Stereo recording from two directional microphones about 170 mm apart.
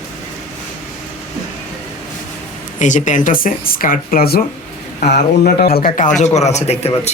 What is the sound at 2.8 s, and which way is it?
Speech, 45° left (ahead or behind).